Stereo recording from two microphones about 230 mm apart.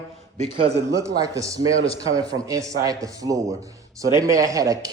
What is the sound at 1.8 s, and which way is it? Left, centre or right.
Speech, left.